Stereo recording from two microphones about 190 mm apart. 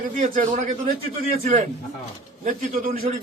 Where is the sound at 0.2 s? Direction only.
40° right (ahead or behind).